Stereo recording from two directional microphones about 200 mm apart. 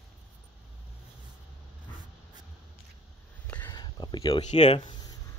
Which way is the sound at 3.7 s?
20° left (ahead or behind).